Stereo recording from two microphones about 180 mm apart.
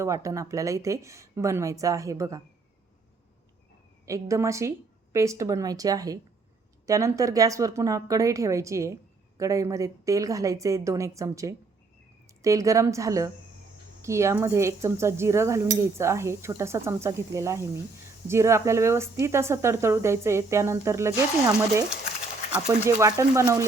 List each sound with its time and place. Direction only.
0.0 s speech: 15° right (ahead or behind)
4.0 s speech: 15° right (ahead or behind)
23.0 s speech: 20° right (ahead or behind)